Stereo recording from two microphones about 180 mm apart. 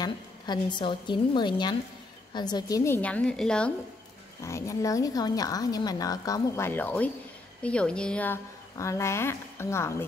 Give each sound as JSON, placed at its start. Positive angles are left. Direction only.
{"t": 0.0, "sound": "speech", "side_deg": 25}
{"t": 4.4, "sound": "speech", "side_deg": 15}